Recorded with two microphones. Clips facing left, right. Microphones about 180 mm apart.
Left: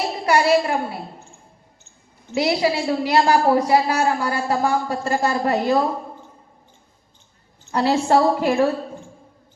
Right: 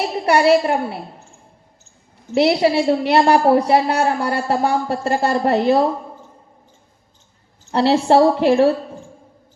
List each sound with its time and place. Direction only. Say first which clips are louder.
0.3 s speech: right 3 dB; 60° right (ahead or behind)
2.3 s speech: right 5 dB; 60° right (ahead or behind)
4.9 s a woman's voice: right 3 dB; 30° right (ahead or behind)
7.6 s a woman's voice: right 3 dB; 30° right (ahead or behind)